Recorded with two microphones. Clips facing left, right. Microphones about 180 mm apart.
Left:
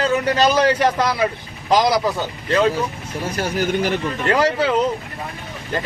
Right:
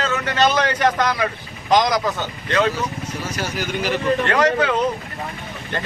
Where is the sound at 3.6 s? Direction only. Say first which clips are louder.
Left 5 dB; 50° left (ahead or behind).